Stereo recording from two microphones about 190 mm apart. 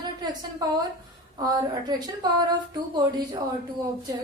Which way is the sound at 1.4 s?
20° right (ahead or behind).